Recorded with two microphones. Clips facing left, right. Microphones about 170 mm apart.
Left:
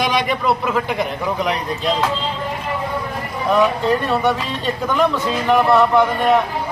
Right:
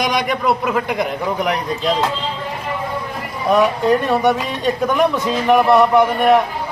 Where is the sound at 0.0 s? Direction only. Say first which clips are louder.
Even; 15° right (ahead or behind).